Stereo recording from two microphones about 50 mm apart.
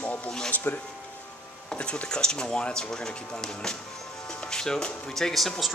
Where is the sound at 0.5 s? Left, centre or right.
Left.